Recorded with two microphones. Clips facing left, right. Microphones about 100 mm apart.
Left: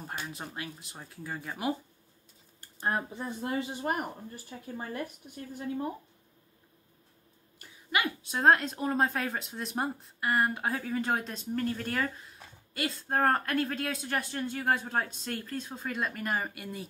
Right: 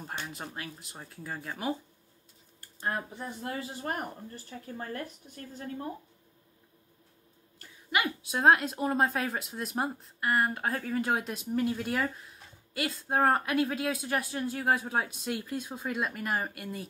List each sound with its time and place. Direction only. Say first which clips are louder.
0.0 s speech: even; centre (ahead or behind)
1.5 s speech: left 1 dB; 10° left (ahead or behind)
4.5 s speech: even; 10° left (ahead or behind)
7.9 s speech: right 1 dB; 5° right (ahead or behind)